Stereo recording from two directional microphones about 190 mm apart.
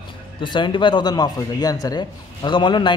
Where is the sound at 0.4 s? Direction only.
25° left (ahead or behind).